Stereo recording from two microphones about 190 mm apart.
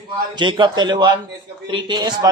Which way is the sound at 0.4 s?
25° right (ahead or behind).